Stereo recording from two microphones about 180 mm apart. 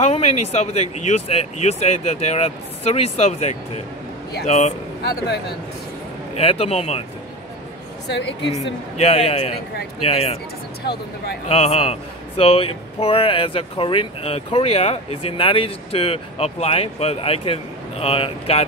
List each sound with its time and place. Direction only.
0.0 s a man's voice: 35° left (ahead or behind)
6.3 s a man's voice: 35° left (ahead or behind)
8.1 s a woman's voice: 75° left (ahead or behind)
8.9 s a man's voice: 35° left (ahead or behind)
11.4 s a man's voice: 35° left (ahead or behind)